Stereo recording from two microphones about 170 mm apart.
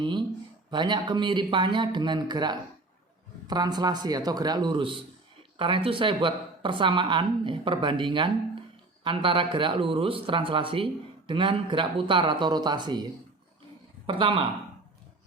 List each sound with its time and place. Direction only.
0.0 s speech: 30° right (ahead or behind)
14.1 s speech: 30° right (ahead or behind)